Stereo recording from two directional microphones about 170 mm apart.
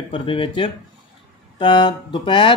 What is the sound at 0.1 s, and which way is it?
Speech, 30° left (ahead or behind).